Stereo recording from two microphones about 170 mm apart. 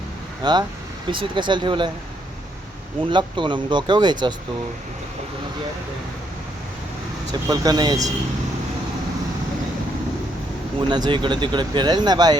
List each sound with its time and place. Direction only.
0.4 s speech: 25° right (ahead or behind)
3.1 s speech: 30° right (ahead or behind)
7.4 s speech: 20° right (ahead or behind)
10.8 s speech: 25° right (ahead or behind)